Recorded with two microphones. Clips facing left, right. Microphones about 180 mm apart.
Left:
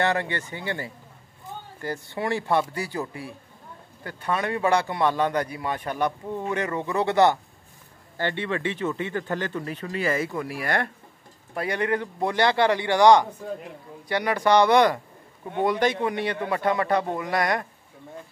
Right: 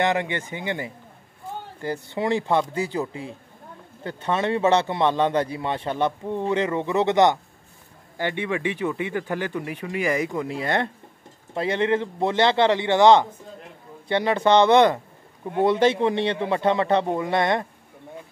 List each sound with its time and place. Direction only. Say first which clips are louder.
0.0 s a man's voice: right 2 dB; 15° right (ahead or behind)